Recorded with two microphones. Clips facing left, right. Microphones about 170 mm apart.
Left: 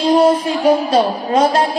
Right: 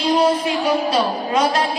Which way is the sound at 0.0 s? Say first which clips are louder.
Left 5 dB; 50° left (ahead or behind).